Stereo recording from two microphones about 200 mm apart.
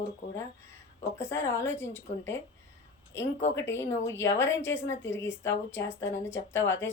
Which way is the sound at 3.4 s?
60° left (ahead or behind).